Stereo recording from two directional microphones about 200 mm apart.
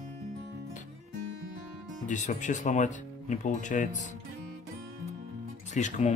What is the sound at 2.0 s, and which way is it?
Speech, 35° left (ahead or behind).